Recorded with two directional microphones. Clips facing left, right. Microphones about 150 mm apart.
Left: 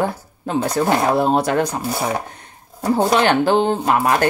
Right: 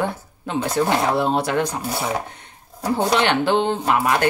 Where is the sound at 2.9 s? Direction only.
45° left (ahead or behind).